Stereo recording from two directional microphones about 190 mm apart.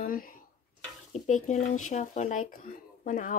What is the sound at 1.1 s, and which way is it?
Speech, 40° left (ahead or behind).